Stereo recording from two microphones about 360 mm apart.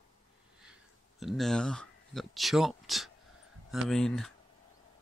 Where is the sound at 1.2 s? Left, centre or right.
Centre.